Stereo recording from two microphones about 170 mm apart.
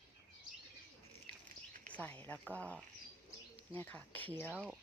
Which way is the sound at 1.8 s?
10° left (ahead or behind).